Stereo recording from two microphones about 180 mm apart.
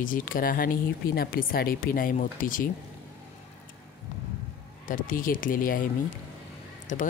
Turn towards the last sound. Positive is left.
turn(degrees=45)  # may be behind; listen again after turning